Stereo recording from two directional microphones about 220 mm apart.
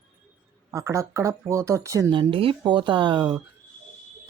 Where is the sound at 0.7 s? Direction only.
15° right (ahead or behind).